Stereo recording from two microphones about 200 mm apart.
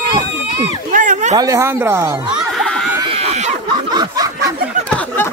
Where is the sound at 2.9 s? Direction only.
25° right (ahead or behind).